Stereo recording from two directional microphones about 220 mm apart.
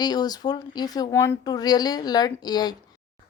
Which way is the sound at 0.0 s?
20° left (ahead or behind).